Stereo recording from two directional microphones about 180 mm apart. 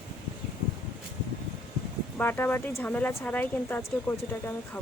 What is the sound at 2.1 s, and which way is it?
Speech, 10° left (ahead or behind).